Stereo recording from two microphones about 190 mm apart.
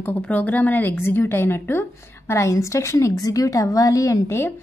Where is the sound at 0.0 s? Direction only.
10° left (ahead or behind).